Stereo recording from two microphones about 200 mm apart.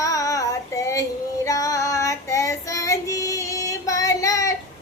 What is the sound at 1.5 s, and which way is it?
Child singing, 15° left (ahead or behind).